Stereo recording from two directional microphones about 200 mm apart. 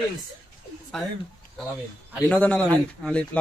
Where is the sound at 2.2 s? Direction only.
5° left (ahead or behind).